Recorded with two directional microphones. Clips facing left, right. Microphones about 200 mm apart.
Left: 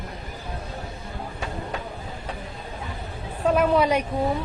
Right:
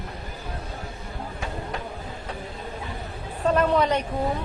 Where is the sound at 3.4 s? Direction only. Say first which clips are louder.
Left 1 dB; 10° left (ahead or behind).